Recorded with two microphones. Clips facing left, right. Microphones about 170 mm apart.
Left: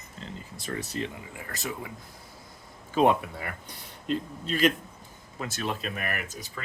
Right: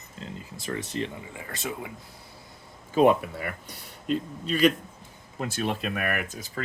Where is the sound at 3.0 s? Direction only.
55° right (ahead or behind).